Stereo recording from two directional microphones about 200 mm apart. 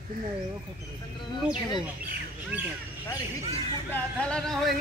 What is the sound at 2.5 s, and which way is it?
Crow, 10° right (ahead or behind).